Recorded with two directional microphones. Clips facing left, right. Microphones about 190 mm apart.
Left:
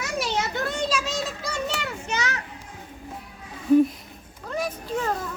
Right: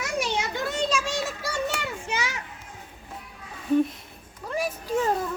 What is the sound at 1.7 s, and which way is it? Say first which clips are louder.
Children playing: left 1 dB; 5° right (ahead or behind).